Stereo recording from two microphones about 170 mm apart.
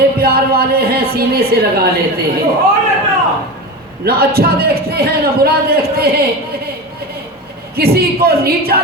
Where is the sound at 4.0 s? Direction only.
65° right (ahead or behind).